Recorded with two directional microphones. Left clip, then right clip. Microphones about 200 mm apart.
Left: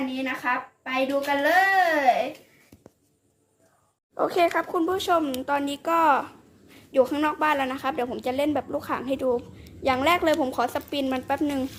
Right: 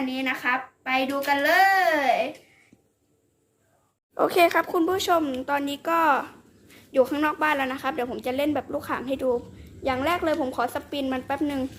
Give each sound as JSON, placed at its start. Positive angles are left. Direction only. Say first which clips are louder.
{"t": 0.1, "sound": "a child's voice", "louder": "right 3 dB", "side_deg": -20}
{"t": 4.1, "sound": "a woman's voice", "louder": "right 2 dB", "side_deg": -10}